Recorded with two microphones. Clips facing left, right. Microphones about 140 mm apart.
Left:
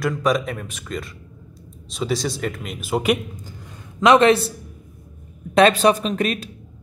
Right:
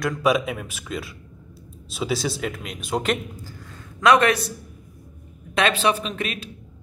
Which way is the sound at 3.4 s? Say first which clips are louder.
Left 1 dB; 20° left (ahead or behind).